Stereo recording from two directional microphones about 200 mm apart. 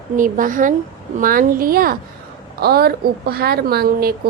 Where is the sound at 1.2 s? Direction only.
45° right (ahead or behind).